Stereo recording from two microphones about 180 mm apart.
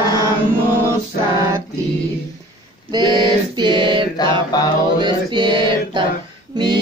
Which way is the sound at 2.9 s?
25° right (ahead or behind).